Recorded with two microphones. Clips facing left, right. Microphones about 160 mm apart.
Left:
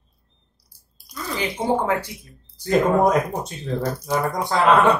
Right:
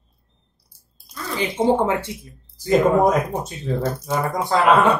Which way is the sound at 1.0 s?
25° right (ahead or behind).